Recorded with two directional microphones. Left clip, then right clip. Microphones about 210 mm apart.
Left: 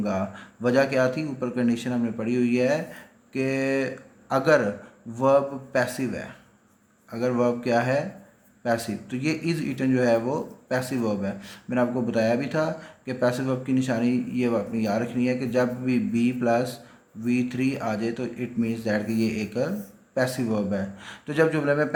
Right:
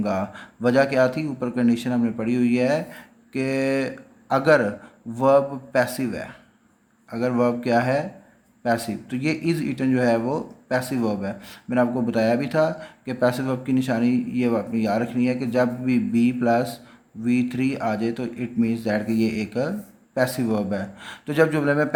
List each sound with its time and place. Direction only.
0.0 s speech: 20° right (ahead or behind)